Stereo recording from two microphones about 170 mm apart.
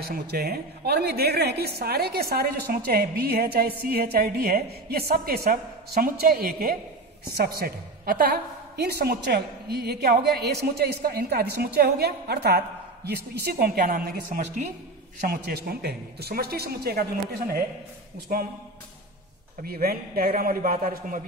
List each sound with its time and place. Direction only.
0.0 s a woman's voice: 70° right (ahead or behind)
19.6 s a woman's voice: 65° right (ahead or behind)